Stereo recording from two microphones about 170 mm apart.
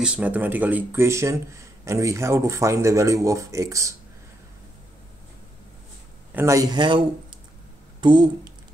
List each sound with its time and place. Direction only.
0.0 s speech: 10° right (ahead or behind)
6.3 s speech: 15° right (ahead or behind)